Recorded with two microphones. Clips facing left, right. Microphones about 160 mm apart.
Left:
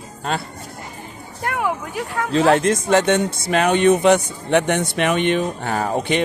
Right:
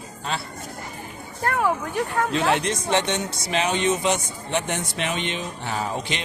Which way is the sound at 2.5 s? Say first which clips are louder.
Left 7 dB; 45° left (ahead or behind).